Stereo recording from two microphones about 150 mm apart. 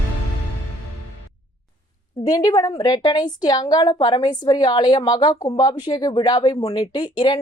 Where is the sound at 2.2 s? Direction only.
25° left (ahead or behind).